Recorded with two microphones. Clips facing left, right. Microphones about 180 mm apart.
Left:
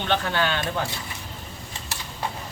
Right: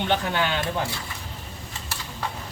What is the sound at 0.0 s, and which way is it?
Speech, 15° right (ahead or behind).